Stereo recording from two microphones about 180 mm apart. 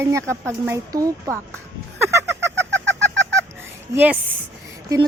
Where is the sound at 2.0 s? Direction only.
15° right (ahead or behind).